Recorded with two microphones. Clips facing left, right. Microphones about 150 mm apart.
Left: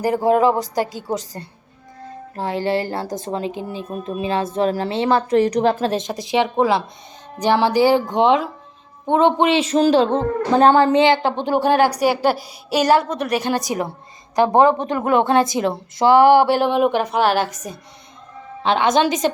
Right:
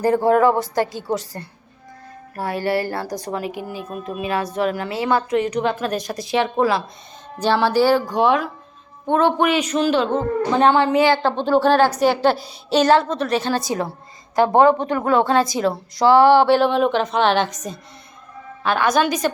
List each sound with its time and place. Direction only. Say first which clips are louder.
0.0 s a woman's voice: right 1 dB; 15° left (ahead or behind); by 10.9 s 40° left (ahead or behind)
10.9 s a woman's voice: left 1 dB; 20° left (ahead or behind)
18.6 s speech: left 2 dB; 25° left (ahead or behind)